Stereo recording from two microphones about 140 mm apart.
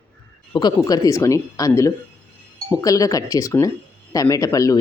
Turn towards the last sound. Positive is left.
turn(degrees=25)  # may be behind; listen again after turning